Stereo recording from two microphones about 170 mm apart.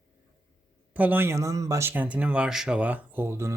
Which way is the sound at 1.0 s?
10° right (ahead or behind).